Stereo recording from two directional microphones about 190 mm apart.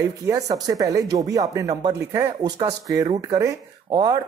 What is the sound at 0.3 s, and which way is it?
Speech, 20° right (ahead or behind).